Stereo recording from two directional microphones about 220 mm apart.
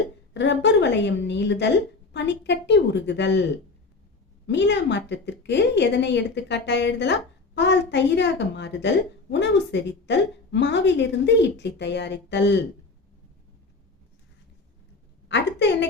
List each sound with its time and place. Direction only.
0.3 s a woman's voice: 55° left (ahead or behind)
4.4 s a woman's voice: 55° left (ahead or behind)
15.3 s a woman's voice: 50° left (ahead or behind)